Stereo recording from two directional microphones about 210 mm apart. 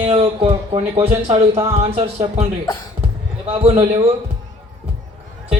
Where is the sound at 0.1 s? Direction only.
25° right (ahead or behind).